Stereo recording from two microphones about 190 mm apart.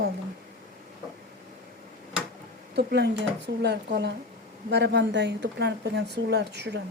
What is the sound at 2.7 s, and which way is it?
Speech, 60° right (ahead or behind).